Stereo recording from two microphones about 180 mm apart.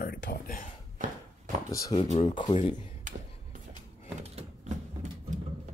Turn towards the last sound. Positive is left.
turn(degrees=-35)  # may be behind; listen again after turning